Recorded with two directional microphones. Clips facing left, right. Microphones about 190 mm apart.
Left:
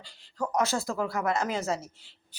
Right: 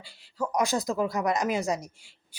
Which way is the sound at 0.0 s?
10° right (ahead or behind).